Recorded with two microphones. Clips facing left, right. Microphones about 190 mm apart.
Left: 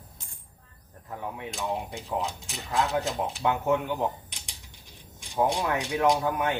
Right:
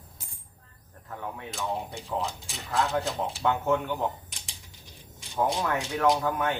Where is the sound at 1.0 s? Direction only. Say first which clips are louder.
Left 1 dB; 15° left (ahead or behind).